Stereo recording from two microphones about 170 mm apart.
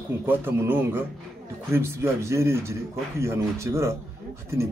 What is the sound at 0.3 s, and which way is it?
A man's voice, 15° right (ahead or behind).